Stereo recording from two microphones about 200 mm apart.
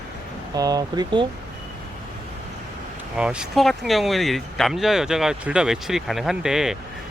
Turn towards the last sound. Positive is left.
turn(degrees=-5)  # may be behind; listen again after turning